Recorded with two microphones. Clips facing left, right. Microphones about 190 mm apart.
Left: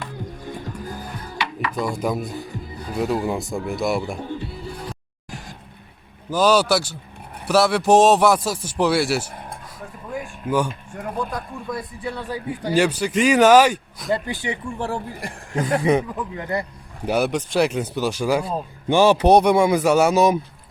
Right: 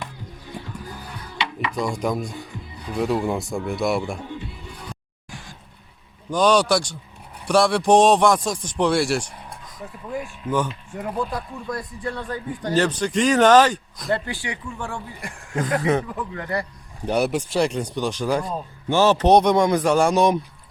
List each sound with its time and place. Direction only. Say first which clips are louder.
0.5 s music: left 1 dB; 50° left (ahead or behind)
1.7 s speech: even; 5° left (ahead or behind)
4.2 s music: left 4 dB; 35° left (ahead or behind)
6.3 s speech: left 1 dB; 5° left (ahead or behind)
9.3 s cattle: left 4 dB; 50° left (ahead or behind)
10.1 s a man's voice: left 1 dB; centre (ahead or behind); by 14.6 s 20° left (ahead or behind)
14.8 s speech: left 5 dB; 35° left (ahead or behind)
15.5 s a man's voice: left 2 dB; 10° left (ahead or behind)
17.1 s a man's voice: left 1 dB; centre (ahead or behind)